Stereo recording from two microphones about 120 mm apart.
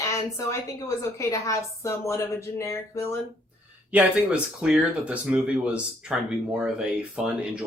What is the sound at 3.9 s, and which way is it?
Speech, 10° right (ahead or behind).